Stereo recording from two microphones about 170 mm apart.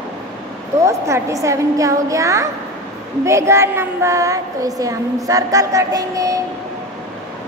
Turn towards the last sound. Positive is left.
turn(degrees=-20)  # may be behind; listen again after turning